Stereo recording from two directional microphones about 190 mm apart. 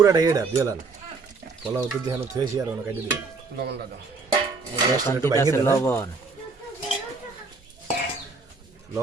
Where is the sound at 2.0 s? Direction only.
20° right (ahead or behind).